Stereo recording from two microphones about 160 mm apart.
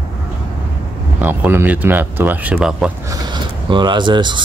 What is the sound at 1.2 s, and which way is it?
Speech, 15° right (ahead or behind).